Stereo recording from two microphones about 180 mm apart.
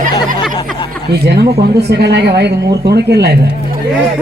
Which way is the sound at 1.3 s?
60° right (ahead or behind).